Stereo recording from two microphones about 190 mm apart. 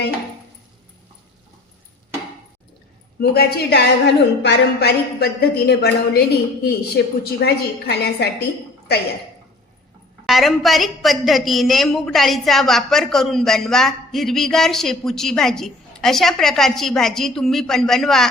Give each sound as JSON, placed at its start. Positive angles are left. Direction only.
{"t": 3.2, "sound": "a woman's voice", "side_deg": 55}
{"t": 10.2, "sound": "a woman's voice", "side_deg": 0}